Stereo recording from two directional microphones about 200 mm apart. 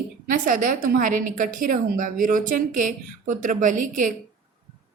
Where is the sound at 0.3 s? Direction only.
40° right (ahead or behind).